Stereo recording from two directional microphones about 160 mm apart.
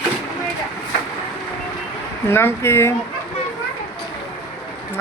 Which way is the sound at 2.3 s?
15° left (ahead or behind).